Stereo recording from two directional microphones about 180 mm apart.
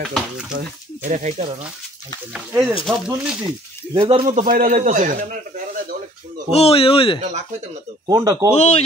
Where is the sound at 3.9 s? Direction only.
30° right (ahead or behind).